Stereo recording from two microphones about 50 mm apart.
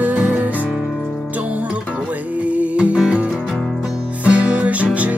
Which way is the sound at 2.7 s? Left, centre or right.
Centre.